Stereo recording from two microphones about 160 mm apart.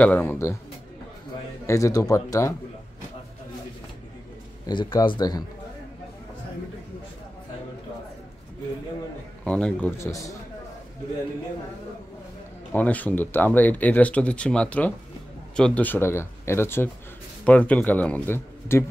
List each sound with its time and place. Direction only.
0.0 s speech: 10° left (ahead or behind)
1.7 s speech: 20° left (ahead or behind)
4.6 s speech: 30° left (ahead or behind)
9.4 s speech: 5° left (ahead or behind)
12.7 s speech: 10° left (ahead or behind)